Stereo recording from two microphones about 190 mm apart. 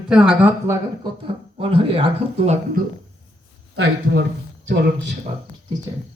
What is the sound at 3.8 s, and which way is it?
Speech, 70° right (ahead or behind).